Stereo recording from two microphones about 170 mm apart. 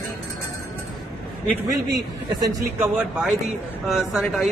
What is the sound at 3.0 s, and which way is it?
A man's voice, 5° right (ahead or behind).